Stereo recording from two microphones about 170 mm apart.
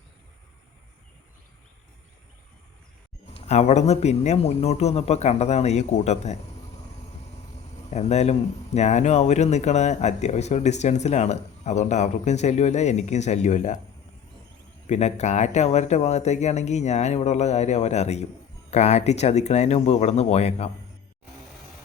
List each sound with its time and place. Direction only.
3.3 s speech: 40° left (ahead or behind)
7.9 s speech: 40° left (ahead or behind)
14.8 s speech: 40° left (ahead or behind)